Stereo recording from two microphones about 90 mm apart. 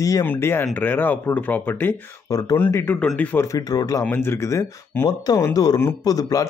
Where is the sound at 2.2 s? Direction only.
40° left (ahead or behind).